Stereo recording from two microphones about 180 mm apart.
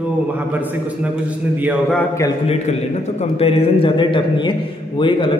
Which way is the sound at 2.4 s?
35° left (ahead or behind).